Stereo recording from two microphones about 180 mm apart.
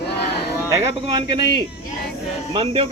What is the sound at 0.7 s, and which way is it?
Speech, 20° right (ahead or behind).